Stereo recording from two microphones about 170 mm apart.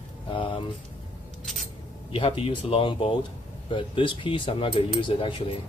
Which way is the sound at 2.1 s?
35° left (ahead or behind).